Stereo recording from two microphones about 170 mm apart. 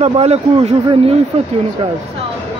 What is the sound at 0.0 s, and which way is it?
A man's voice, 40° right (ahead or behind).